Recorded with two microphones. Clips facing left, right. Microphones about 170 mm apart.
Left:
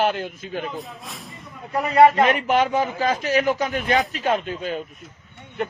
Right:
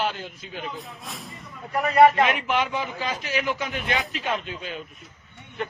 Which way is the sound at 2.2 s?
40° left (ahead or behind).